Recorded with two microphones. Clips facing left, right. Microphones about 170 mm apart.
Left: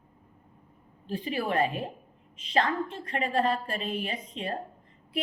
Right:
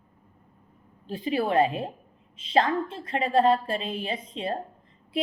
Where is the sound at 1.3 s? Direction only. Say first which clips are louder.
Right 5 dB; 30° right (ahead or behind).